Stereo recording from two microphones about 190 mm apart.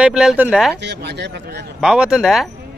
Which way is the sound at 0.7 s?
60° right (ahead or behind).